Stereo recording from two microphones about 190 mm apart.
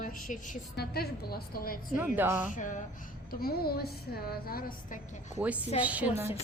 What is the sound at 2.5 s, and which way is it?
Speech, 40° left (ahead or behind).